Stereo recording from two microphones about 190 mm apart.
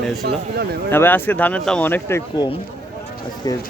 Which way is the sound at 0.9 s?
10° left (ahead or behind).